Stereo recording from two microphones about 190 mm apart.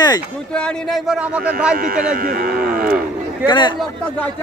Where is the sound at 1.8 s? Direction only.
50° right (ahead or behind).